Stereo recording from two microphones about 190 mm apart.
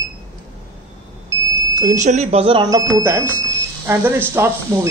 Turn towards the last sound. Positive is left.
turn(degrees=-10)  # may be behind; listen again after turning